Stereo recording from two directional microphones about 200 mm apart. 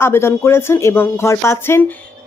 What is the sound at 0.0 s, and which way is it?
Speech, 10° left (ahead or behind).